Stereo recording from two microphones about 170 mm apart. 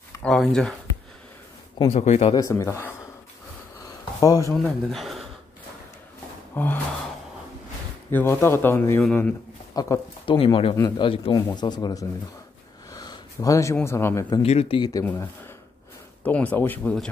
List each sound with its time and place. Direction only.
0.2 s speech: centre (ahead or behind)
1.8 s speech: 35° left (ahead or behind)
2.3 s speech: 20° left (ahead or behind)
4.2 s speech: 20° left (ahead or behind)
4.6 s speech: centre (ahead or behind)
6.5 s speech: 10° left (ahead or behind)
8.1 s speech: 15° left (ahead or behind)
9.8 s speech: 25° left (ahead or behind)
12.9 s a sound: 25° left (ahead or behind)
13.7 s speech: 15° left (ahead or behind)
14.4 s speech: 35° left (ahead or behind)
15.0 s speech: 15° left (ahead or behind)